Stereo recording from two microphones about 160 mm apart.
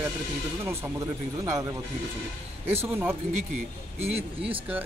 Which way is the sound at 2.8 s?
10° right (ahead or behind).